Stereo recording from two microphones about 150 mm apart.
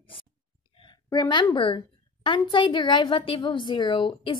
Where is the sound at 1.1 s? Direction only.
30° left (ahead or behind).